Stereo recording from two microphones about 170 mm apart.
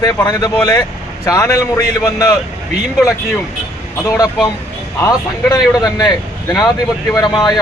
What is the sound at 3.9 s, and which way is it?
Speech, 20° left (ahead or behind).